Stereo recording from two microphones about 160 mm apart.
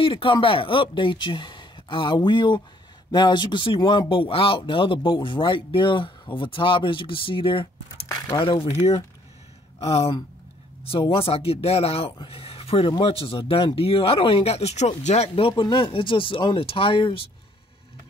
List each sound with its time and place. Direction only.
0.0 s speech: 35° left (ahead or behind)
9.8 s speech: 40° left (ahead or behind)